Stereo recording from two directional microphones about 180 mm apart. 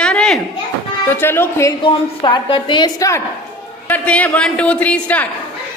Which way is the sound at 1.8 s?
25° left (ahead or behind).